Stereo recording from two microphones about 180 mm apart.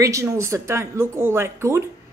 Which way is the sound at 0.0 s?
15° right (ahead or behind).